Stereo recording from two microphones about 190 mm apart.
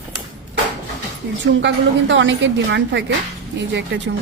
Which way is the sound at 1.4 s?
70° right (ahead or behind).